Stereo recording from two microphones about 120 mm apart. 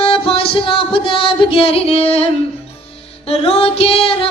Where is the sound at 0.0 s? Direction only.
50° left (ahead or behind).